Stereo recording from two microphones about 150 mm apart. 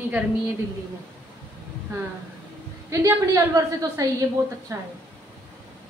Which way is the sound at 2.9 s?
20° right (ahead or behind).